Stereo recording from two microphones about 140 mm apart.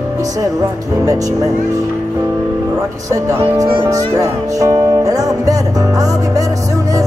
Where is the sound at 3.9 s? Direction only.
25° right (ahead or behind).